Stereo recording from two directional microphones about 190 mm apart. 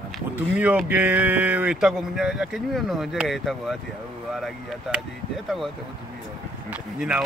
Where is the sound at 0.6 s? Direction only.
5° right (ahead or behind).